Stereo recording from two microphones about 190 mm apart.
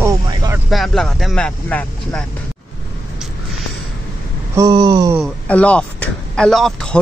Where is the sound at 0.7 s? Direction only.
Centre (ahead or behind).